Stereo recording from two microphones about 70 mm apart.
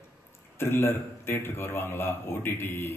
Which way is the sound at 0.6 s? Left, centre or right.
Left.